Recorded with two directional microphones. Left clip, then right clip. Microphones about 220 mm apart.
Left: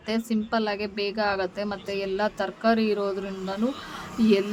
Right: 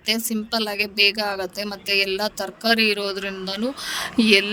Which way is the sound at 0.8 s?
45° right (ahead or behind).